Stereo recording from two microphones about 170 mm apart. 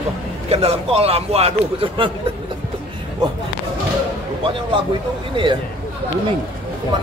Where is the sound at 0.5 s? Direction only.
35° right (ahead or behind).